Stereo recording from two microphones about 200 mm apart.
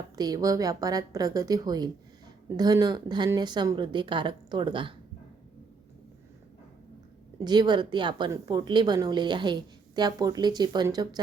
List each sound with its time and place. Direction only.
0.2 s a woman's voice: 20° right (ahead or behind)
7.4 s a woman's voice: 20° right (ahead or behind)